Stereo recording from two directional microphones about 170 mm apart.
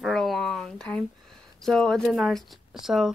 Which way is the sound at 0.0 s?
Centre (ahead or behind).